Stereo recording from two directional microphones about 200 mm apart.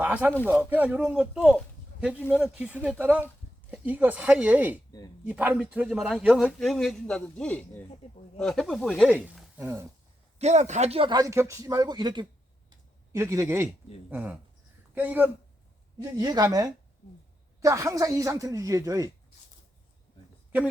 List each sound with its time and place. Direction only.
0.0 s speech: 10° right (ahead or behind)
0.3 s speech: 10° left (ahead or behind)
0.6 s a man's voice: 10° right (ahead or behind)
4.9 s speech: 20° left (ahead or behind)
5.3 s a man's voice: 10° right (ahead or behind)
10.3 s speech: 35° right (ahead or behind); by 15.3 s 10° right (ahead or behind)
16.1 s speech: 20° right (ahead or behind)